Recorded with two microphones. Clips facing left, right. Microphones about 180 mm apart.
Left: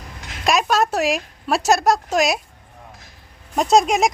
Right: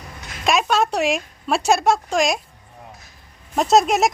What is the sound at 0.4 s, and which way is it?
A woman's voice, centre (ahead or behind).